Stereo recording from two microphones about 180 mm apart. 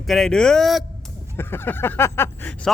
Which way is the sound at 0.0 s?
Centre (ahead or behind).